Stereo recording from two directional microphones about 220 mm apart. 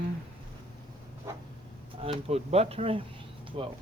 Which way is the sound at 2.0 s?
25° right (ahead or behind).